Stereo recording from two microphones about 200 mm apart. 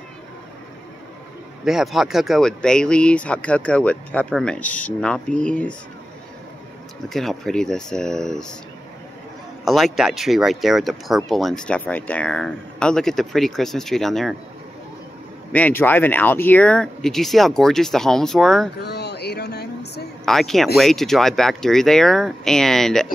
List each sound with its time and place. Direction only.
1.6 s speech: centre (ahead or behind)
7.1 s speech: centre (ahead or behind)
9.7 s speech: centre (ahead or behind)
15.5 s speech: 10° left (ahead or behind)
18.8 s a sound: 55° left (ahead or behind)
20.2 s speech: centre (ahead or behind)